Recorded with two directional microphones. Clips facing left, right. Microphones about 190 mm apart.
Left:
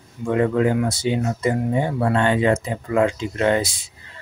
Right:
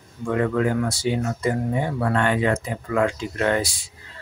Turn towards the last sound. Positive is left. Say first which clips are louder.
# left 3 dB
turn(degrees=20)  # may be behind; listen again after turning